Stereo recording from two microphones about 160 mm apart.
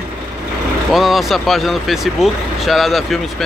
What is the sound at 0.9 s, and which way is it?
Speech, centre (ahead or behind).